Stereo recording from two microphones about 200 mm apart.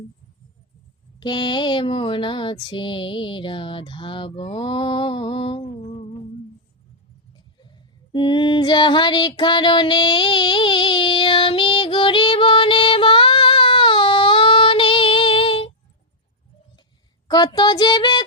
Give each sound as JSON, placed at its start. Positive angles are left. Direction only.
{"t": 1.2, "sound": "mantra", "side_deg": 20}
{"t": 8.1, "sound": "female singing", "side_deg": 25}
{"t": 17.2, "sound": "mantra", "side_deg": 20}